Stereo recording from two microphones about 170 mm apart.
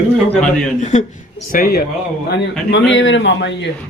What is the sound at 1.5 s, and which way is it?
Speech, 60° left (ahead or behind).